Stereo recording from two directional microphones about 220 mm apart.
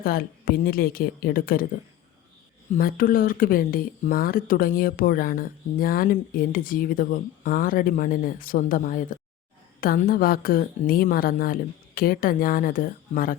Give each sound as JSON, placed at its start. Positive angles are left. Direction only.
{"t": 0.0, "sound": "speech", "side_deg": 40}
{"t": 2.7, "sound": "speech", "side_deg": 40}